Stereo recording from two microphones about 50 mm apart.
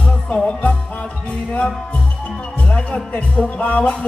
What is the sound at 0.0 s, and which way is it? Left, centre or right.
Music, left.